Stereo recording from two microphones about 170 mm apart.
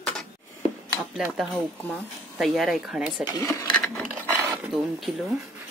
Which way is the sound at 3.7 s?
5° left (ahead or behind).